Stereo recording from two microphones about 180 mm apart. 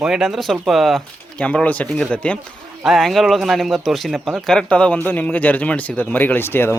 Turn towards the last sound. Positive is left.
turn(degrees=10)  # may be behind; listen again after turning